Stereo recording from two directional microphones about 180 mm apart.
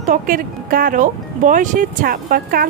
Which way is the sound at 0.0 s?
50° right (ahead or behind).